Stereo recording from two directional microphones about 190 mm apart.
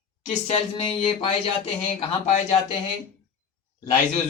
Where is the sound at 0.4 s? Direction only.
30° left (ahead or behind).